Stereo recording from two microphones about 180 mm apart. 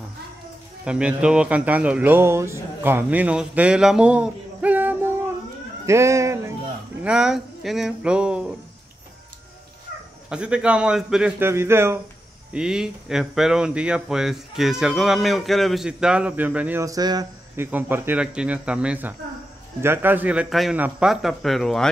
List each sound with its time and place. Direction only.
0.8 s speech: 5° right (ahead or behind)
7.0 s speech: 5° right (ahead or behind)
10.3 s speech: 5° right (ahead or behind); by 17.6 s 20° right (ahead or behind)
17.6 s speech: 10° right (ahead or behind)